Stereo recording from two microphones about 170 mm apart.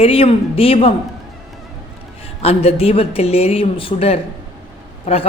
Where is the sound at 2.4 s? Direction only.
35° left (ahead or behind).